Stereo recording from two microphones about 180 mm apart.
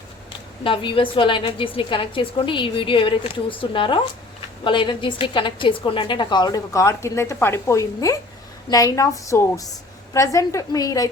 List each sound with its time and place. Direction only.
0.6 s a woman's voice: 30° left (ahead or behind)